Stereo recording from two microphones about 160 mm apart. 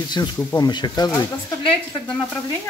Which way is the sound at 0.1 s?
25° left (ahead or behind).